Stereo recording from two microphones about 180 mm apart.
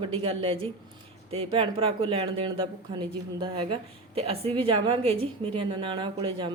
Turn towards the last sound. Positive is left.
turn(degrees=-25)  # may be behind; listen again after turning